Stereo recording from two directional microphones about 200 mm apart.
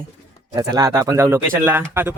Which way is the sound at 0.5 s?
15° right (ahead or behind).